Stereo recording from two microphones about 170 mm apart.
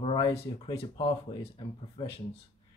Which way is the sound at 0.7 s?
30° left (ahead or behind).